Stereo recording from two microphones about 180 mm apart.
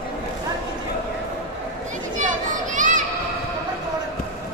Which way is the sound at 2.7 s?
45° right (ahead or behind).